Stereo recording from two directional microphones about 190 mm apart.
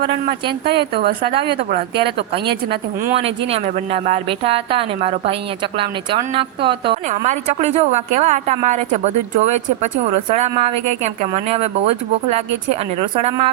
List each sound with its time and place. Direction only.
0.0 s a woman's voice: 65° right (ahead or behind)
3.2 s a woman's voice: 30° right (ahead or behind)
7.1 s a woman's voice: 35° right (ahead or behind)